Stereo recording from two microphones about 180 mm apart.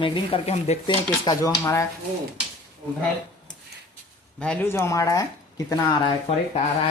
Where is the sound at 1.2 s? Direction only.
20° left (ahead or behind).